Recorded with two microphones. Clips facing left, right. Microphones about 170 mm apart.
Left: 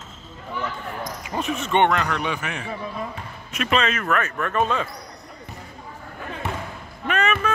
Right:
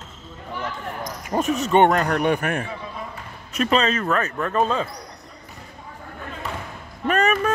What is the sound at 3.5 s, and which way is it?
Speech, 35° right (ahead or behind).